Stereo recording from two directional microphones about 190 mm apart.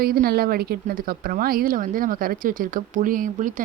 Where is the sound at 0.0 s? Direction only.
50° right (ahead or behind).